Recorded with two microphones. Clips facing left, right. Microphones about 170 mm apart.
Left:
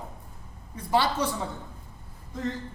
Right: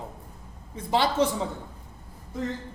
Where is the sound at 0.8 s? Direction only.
20° right (ahead or behind).